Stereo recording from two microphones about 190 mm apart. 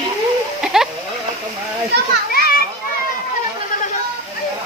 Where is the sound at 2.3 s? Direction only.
55° left (ahead or behind).